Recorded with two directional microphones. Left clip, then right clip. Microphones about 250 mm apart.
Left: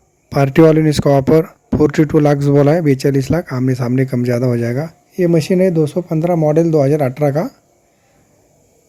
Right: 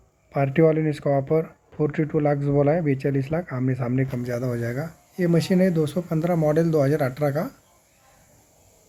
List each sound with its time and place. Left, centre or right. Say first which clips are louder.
0.3 s speech: left 9 dB; left
4.1 s speech: left 11 dB; left